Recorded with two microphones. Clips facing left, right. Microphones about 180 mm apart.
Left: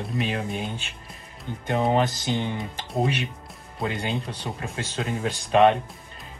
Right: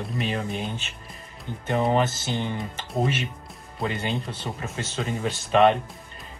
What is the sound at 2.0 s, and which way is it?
Speech, 15° left (ahead or behind).